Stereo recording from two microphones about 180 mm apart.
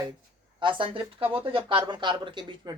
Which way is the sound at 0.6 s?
30° right (ahead or behind).